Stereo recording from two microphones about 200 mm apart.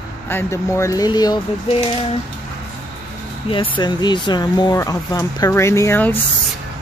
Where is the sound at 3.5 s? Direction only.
25° left (ahead or behind).